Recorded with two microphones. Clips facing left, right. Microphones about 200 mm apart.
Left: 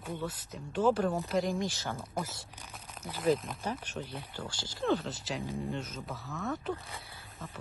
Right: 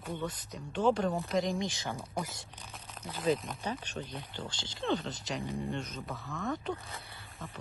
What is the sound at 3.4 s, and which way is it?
Speech, 5° left (ahead or behind).